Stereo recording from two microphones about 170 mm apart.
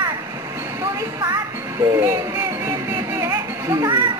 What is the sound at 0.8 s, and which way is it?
Speech, 20° right (ahead or behind).